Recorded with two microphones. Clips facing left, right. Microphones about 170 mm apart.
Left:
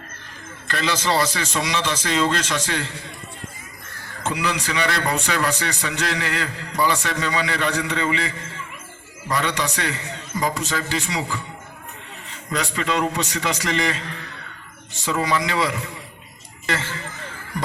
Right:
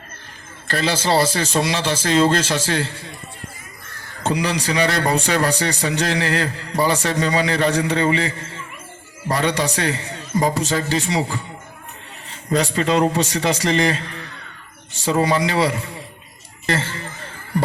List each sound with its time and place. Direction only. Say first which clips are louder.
0.7 s a man's voice: right 3 dB; 35° right (ahead or behind)
4.2 s a man's voice: right 4 dB; 35° right (ahead or behind)
12.5 s a man's voice: right 6 dB; 35° right (ahead or behind)
15.0 s a man's voice: right 4 dB; 35° right (ahead or behind)